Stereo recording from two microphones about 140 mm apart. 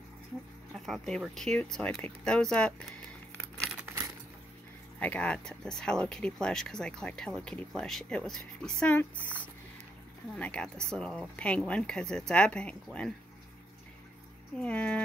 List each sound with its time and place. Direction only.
0.7 s speech: centre (ahead or behind)
3.7 s keys jangling: 15° right (ahead or behind)
5.0 s speech: 10° left (ahead or behind)
14.6 s speech: 10° left (ahead or behind)